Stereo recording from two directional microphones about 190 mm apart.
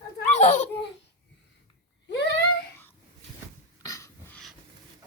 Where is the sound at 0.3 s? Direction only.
40° left (ahead or behind).